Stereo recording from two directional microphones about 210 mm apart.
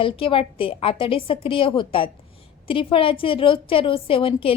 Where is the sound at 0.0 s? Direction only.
25° left (ahead or behind).